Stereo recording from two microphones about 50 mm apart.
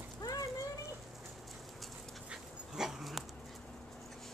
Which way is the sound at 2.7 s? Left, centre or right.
Centre.